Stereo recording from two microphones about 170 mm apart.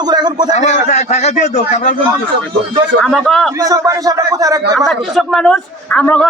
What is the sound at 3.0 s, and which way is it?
Speech, 5° left (ahead or behind).